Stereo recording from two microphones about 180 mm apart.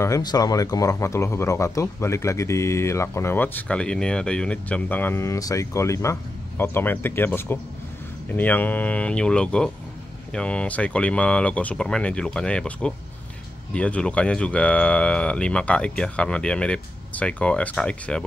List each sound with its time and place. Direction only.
0.0 s speech: 20° left (ahead or behind)